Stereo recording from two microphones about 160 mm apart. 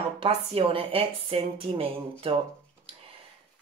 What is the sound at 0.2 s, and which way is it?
Speech, 35° right (ahead or behind).